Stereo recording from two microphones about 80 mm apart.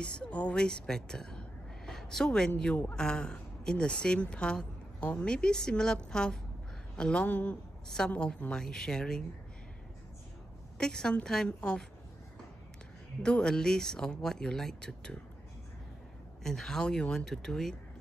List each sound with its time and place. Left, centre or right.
0.0 s a man's voice: centre
10.8 s a man's voice: centre
13.2 s a man's voice: centre
16.4 s a man's voice: centre